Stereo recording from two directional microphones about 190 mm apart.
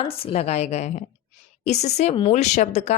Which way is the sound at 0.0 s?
30° left (ahead or behind).